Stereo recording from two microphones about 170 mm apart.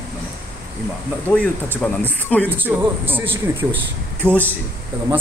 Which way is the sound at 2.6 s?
10° right (ahead or behind).